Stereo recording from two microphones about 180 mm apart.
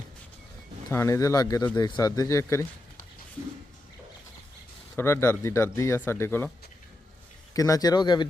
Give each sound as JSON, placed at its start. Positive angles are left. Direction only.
{"t": 0.9, "sound": "speech", "side_deg": 15}
{"t": 4.9, "sound": "speech", "side_deg": 15}
{"t": 7.5, "sound": "speech", "side_deg": 20}